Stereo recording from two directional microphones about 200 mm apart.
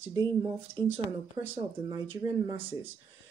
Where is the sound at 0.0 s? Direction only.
20° right (ahead or behind).